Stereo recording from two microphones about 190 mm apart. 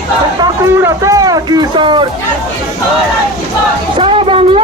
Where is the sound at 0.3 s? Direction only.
15° right (ahead or behind).